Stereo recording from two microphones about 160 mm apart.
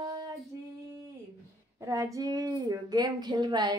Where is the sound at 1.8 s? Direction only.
20° right (ahead or behind).